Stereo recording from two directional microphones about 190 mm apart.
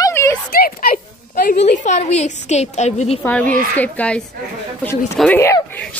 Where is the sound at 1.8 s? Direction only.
40° left (ahead or behind).